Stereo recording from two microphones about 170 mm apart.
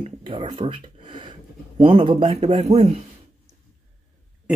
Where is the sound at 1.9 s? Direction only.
35° right (ahead or behind).